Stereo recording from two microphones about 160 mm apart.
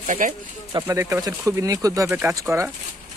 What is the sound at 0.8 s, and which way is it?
Speech, 15° right (ahead or behind).